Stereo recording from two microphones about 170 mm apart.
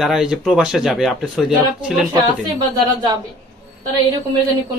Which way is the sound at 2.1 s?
25° right (ahead or behind).